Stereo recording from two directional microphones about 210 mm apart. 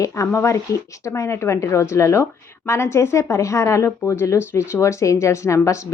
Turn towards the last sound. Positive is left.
turn(degrees=15)  # may be behind; listen again after turning